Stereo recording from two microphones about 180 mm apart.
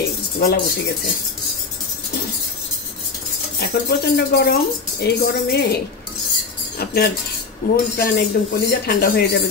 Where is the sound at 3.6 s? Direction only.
65° left (ahead or behind).